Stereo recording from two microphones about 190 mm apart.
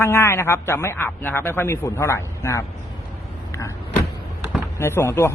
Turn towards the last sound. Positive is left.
turn(degrees=15)  # may be behind; listen again after turning